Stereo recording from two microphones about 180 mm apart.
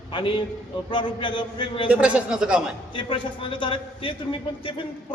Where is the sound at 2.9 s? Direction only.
25° left (ahead or behind).